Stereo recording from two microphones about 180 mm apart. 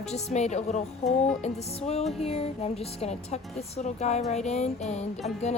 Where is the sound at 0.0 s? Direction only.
35° left (ahead or behind).